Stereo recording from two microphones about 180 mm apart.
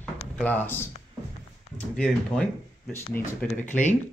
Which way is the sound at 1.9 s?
5° left (ahead or behind).